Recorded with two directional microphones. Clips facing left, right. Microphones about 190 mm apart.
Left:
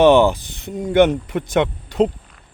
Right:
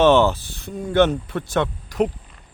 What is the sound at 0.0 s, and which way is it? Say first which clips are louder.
Speech: left 3 dB; 15° left (ahead or behind).